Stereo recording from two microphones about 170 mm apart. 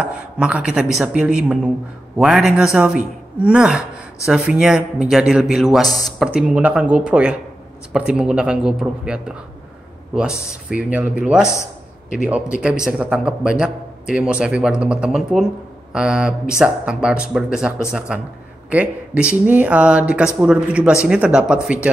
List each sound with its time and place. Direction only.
0.0 s a man's voice: 5° right (ahead or behind)
5.9 s speech: 20° left (ahead or behind)
6.1 s a man's voice: 5° right (ahead or behind)
10.5 s a man's voice: 5° right (ahead or behind)